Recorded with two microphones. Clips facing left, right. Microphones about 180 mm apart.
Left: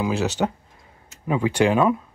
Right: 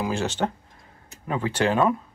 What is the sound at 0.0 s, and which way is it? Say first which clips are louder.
Speech: left 3 dB; 5° left (ahead or behind).